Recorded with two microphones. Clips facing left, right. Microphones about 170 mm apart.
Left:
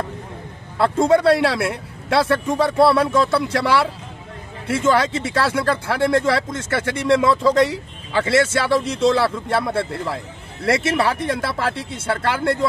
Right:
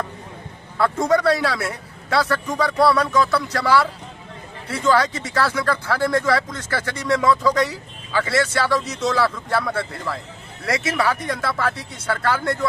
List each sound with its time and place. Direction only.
0.7 s speech: 30° left (ahead or behind)